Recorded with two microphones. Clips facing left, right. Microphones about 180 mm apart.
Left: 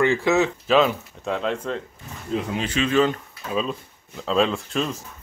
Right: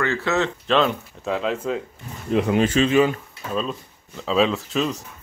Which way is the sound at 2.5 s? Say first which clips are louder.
Right 7 dB; 45° right (ahead or behind).